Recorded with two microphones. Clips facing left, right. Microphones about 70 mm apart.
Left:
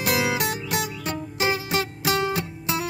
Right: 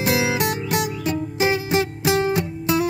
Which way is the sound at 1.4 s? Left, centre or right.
Right.